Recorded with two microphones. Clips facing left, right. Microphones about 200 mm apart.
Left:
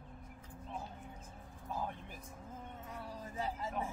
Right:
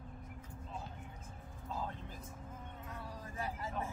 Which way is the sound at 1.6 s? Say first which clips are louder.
Left 1 dB; 15° left (ahead or behind).